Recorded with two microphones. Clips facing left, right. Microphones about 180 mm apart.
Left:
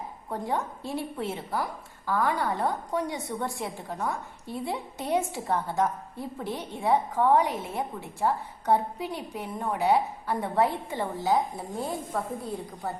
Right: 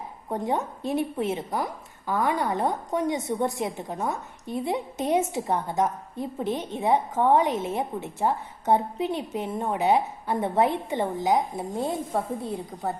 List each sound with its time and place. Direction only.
0.3 s a woman's voice: 20° right (ahead or behind)